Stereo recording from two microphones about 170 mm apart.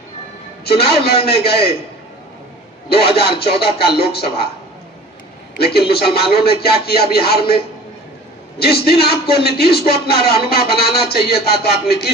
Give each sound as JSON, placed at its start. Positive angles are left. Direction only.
{"t": 0.6, "sound": "a man's voice", "side_deg": 70}
{"t": 3.2, "sound": "speech", "side_deg": 70}
{"t": 5.9, "sound": "speech", "side_deg": 65}